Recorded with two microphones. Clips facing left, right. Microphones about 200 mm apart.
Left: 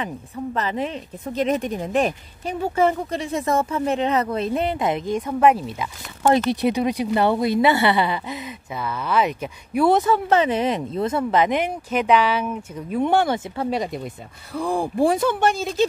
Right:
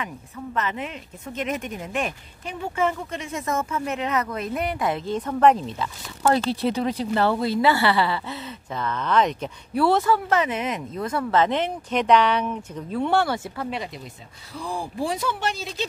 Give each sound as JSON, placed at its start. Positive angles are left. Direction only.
{"t": 0.0, "sound": "speech", "side_deg": 35}
{"t": 13.7, "sound": "speech", "side_deg": 40}
{"t": 14.5, "sound": "speech", "side_deg": 55}